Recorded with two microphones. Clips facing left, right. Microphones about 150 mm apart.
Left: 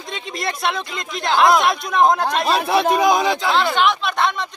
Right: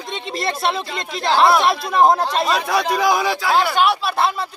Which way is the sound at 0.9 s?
30° right (ahead or behind).